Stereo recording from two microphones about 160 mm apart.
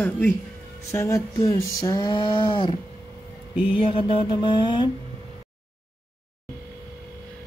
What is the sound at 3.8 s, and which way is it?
Mantra, 35° left (ahead or behind).